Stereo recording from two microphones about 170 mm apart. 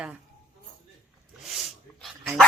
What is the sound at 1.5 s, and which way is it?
Dog, centre (ahead or behind).